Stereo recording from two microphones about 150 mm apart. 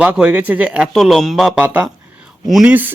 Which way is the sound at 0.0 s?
10° right (ahead or behind).